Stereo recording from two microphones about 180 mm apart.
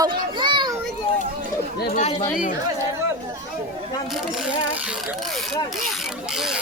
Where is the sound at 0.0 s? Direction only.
25° right (ahead or behind).